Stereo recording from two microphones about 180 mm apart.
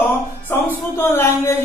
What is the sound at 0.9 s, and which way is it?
Speech, 15° left (ahead or behind).